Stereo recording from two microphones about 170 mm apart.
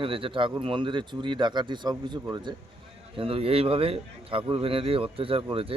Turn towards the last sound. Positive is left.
turn(degrees=-35)  # may be behind; listen again after turning